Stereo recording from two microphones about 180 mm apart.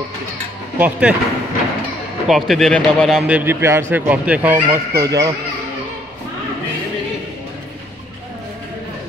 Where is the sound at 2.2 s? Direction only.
Centre (ahead or behind); by 5.3 s 15° right (ahead or behind).